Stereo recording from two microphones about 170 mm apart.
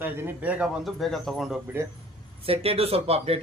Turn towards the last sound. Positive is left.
turn(degrees=-35)  # may be behind; listen again after turning